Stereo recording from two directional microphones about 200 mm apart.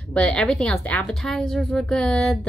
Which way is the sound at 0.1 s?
5° left (ahead or behind).